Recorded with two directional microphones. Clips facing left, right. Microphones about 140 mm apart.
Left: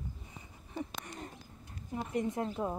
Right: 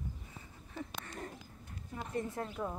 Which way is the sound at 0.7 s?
20° left (ahead or behind).